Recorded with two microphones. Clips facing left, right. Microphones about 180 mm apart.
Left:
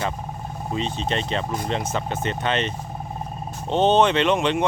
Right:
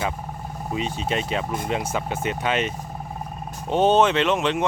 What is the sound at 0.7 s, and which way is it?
Speech, 10° right (ahead or behind).